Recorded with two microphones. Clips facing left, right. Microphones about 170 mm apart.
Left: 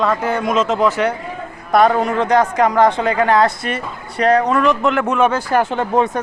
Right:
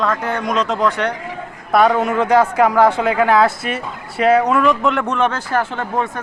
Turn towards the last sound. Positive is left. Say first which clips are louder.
# left 5 dB
turn(degrees=20)  # may be behind; listen again after turning